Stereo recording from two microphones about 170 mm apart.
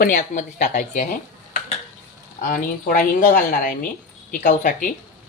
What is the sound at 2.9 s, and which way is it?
A woman's voice, 55° left (ahead or behind).